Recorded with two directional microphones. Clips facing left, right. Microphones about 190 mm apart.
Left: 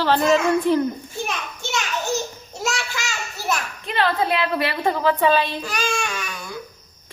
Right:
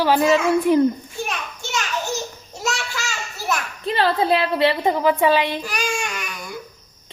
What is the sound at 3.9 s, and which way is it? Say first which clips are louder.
A woman's voice: right 3 dB; 30° right (ahead or behind).